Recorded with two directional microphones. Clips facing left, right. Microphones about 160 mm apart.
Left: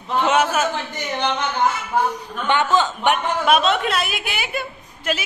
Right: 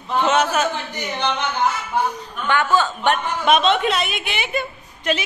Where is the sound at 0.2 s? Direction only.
10° left (ahead or behind).